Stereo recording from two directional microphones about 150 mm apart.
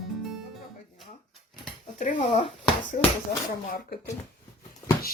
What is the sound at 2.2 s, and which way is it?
Speech, 35° left (ahead or behind).